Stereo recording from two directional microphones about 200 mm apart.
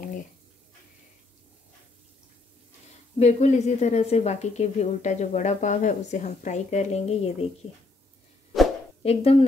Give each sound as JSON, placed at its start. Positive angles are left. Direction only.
{"t": 3.2, "sound": "a woman's voice", "side_deg": 35}
{"t": 9.0, "sound": "speech", "side_deg": 30}